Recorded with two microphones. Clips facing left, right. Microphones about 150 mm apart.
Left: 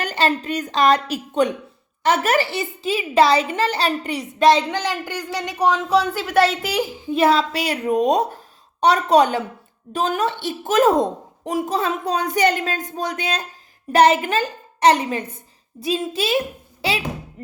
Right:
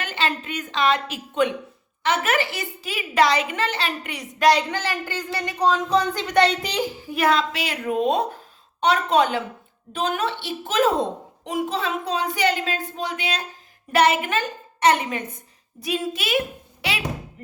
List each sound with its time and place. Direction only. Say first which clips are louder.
0.0 s a woman's voice: left 5 dB; 40° left (ahead or behind); by 7.1 s 10° left (ahead or behind)
7.1 s a woman's voice: left 4 dB; 30° left (ahead or behind)